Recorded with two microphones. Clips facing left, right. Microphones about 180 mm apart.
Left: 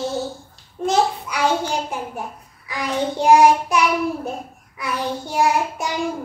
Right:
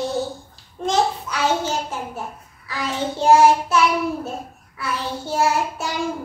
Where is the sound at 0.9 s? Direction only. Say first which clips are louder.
Left 1 dB; 10° left (ahead or behind).